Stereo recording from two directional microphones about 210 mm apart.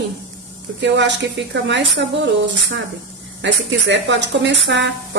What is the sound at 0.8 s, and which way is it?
Speech, 60° right (ahead or behind).